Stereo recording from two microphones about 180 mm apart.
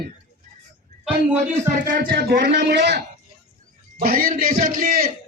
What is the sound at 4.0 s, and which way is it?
A man's voice, 55° right (ahead or behind).